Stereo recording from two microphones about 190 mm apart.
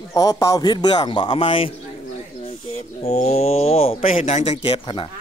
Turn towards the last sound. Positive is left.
turn(degrees=25)  # may be behind; listen again after turning